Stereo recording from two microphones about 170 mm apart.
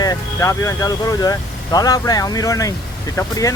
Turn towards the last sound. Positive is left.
turn(degrees=20)  # may be behind; listen again after turning